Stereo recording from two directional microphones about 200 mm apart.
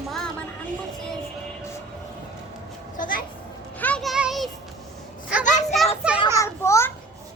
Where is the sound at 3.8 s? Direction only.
5° left (ahead or behind).